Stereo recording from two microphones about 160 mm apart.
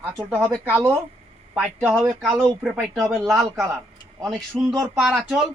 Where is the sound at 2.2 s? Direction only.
5° left (ahead or behind).